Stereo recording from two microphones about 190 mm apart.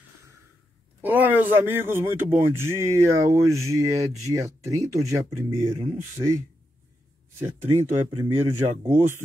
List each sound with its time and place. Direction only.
1.0 s a man's voice: 10° right (ahead or behind)
5.7 s speech: 30° right (ahead or behind)
6.2 s a man's voice: 20° right (ahead or behind)